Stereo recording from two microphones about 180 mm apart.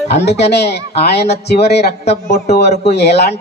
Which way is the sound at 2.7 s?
35° left (ahead or behind).